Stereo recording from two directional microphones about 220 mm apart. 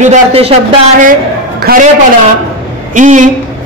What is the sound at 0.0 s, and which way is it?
A man's voice, 30° right (ahead or behind).